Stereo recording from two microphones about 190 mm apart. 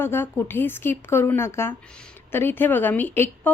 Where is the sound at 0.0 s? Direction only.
10° left (ahead or behind).